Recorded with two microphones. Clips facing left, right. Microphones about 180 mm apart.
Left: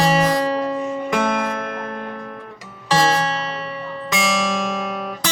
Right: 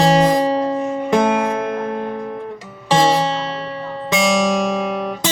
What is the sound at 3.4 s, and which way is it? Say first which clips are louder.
Music: right 3 dB; 30° right (ahead or behind).